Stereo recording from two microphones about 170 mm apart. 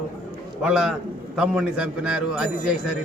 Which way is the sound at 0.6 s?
5° right (ahead or behind).